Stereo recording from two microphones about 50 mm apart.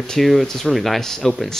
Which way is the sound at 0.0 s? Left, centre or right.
Centre.